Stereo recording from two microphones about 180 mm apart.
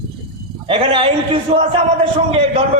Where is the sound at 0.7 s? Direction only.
30° right (ahead or behind).